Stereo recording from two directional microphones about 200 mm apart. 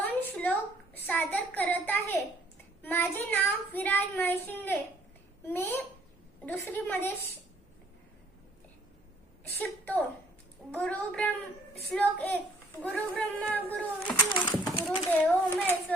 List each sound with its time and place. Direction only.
0.0 s a sound: 10° left (ahead or behind)
0.9 s child singing: 10° left (ahead or behind)
2.8 s speech: 10° left (ahead or behind)
9.6 s a child's voice: 10° left (ahead or behind)
14.3 s speech: 20° left (ahead or behind)
15.1 s speech: 10° left (ahead or behind)